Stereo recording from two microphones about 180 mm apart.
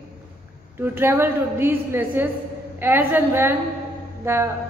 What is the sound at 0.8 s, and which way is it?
A woman's voice, 10° right (ahead or behind).